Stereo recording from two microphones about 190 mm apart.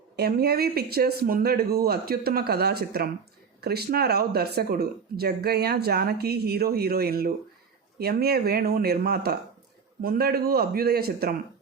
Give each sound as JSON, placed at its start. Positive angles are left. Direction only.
{"t": 0.2, "sound": "speech", "side_deg": -55}